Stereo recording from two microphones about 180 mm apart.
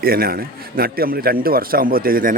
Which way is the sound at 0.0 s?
55° right (ahead or behind).